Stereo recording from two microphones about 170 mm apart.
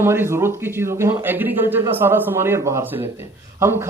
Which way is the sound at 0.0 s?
15° right (ahead or behind).